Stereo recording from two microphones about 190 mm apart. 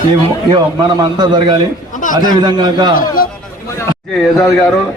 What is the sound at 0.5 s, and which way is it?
A man's voice, 20° right (ahead or behind).